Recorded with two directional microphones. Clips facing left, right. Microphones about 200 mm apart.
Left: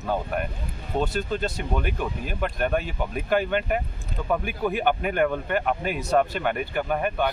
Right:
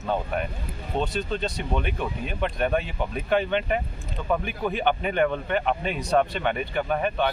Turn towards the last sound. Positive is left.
turn(degrees=5)  # may be behind; listen again after turning